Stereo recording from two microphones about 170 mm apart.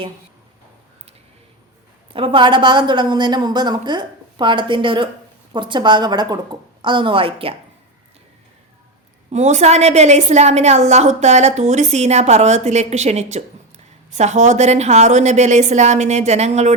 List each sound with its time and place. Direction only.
2.1 s a woman's voice: 30° right (ahead or behind)
9.3 s a woman's voice: 40° right (ahead or behind)